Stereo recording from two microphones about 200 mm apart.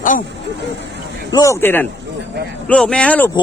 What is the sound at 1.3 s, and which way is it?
Speech, 15° left (ahead or behind).